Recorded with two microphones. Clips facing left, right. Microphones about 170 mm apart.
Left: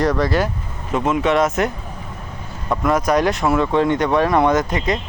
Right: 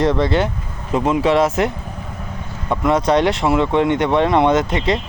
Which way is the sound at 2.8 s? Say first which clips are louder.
Right 2 dB; 25° right (ahead or behind).